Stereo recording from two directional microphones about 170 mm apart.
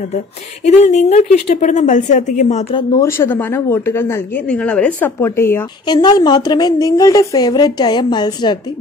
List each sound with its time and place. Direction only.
0.7 s a woman's voice: 40° left (ahead or behind)
2.7 s a woman's voice: 20° left (ahead or behind)
5.9 s a woman's voice: 25° left (ahead or behind)